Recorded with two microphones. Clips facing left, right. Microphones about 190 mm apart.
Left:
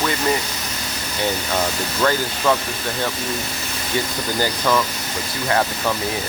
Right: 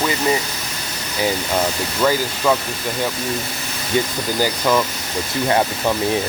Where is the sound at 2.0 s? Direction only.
10° right (ahead or behind).